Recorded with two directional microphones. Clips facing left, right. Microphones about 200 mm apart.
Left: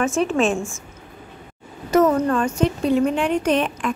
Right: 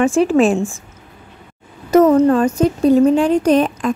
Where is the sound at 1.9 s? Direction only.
35° right (ahead or behind).